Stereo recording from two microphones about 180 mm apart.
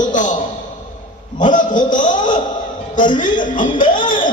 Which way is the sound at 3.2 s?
45° left (ahead or behind).